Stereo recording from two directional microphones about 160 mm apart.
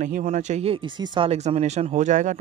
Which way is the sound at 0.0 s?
55° right (ahead or behind).